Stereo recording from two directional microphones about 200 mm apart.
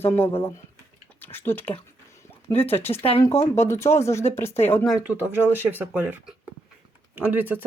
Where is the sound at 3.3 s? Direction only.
30° left (ahead or behind).